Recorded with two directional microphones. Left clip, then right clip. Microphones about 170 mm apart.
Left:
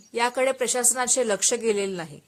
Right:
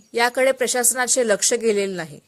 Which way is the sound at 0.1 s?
25° right (ahead or behind).